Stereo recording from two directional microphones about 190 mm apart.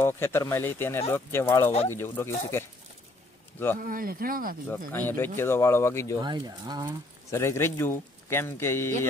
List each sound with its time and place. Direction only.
0.0 s a man's voice: 10° left (ahead or behind)
3.8 s a man's voice: 50° right (ahead or behind)
4.6 s a man's voice: 10° left (ahead or behind)
6.2 s speech: 20° right (ahead or behind)
7.2 s a man's voice: 15° left (ahead or behind)